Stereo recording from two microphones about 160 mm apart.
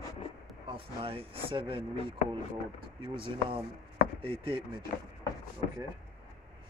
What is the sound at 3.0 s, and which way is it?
Speech, 30° right (ahead or behind).